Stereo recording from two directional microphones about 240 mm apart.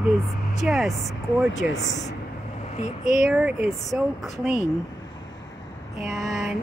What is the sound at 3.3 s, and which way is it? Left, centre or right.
Speech, centre.